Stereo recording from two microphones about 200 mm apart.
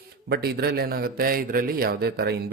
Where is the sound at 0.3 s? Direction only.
50° right (ahead or behind).